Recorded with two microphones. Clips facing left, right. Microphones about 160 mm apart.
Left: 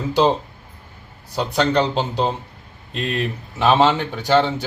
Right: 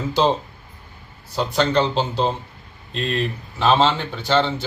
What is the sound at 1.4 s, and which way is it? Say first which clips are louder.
Speech: left 1 dB; 15° left (ahead or behind).